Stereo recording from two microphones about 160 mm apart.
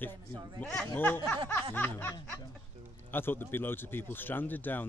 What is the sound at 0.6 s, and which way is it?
Speech, 5° left (ahead or behind).